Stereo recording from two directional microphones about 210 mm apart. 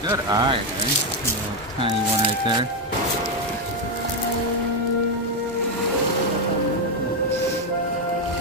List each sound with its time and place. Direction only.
0.1 s speech: 20° right (ahead or behind)
1.8 s speech: 25° right (ahead or behind)